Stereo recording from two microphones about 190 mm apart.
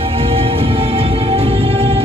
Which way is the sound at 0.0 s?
30° right (ahead or behind).